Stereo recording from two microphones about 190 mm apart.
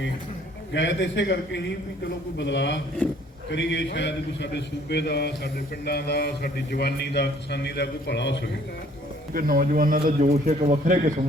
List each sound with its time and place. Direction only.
0.7 s a man's voice: 70° left (ahead or behind)
9.3 s a man's voice: 50° right (ahead or behind)